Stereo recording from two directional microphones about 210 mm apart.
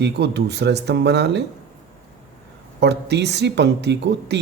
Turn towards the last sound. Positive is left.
turn(degrees=-55)  # may be behind; listen again after turning